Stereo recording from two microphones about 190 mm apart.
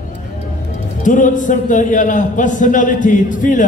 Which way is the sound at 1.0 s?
40° left (ahead or behind).